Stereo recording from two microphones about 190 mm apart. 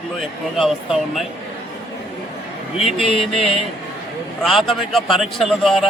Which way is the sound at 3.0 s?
30° left (ahead or behind).